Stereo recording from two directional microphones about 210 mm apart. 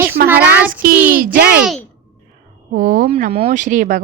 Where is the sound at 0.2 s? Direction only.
50° right (ahead or behind).